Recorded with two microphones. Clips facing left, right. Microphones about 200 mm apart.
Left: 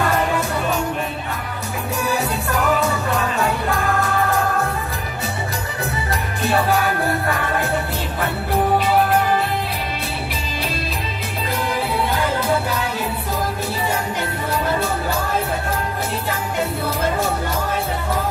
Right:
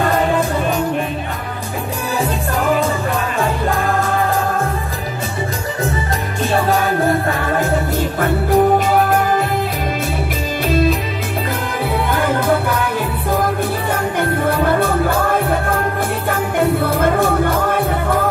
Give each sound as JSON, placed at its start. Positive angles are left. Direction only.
{"t": 8.2, "sound": "music", "side_deg": -45}
{"t": 12.1, "sound": "music", "side_deg": -50}
{"t": 14.1, "sound": "music", "side_deg": -55}